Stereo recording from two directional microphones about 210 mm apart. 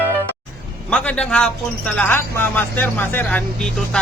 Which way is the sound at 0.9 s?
5° left (ahead or behind).